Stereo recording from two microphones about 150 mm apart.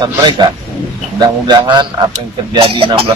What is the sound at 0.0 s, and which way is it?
Speech, 30° right (ahead or behind).